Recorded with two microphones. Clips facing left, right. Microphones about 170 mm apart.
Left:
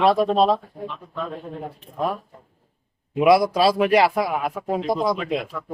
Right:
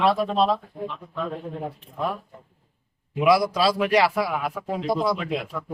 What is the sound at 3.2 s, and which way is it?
A man's voice, 25° left (ahead or behind).